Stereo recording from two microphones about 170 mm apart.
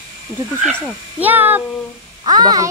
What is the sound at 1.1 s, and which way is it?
Speech, 10° right (ahead or behind).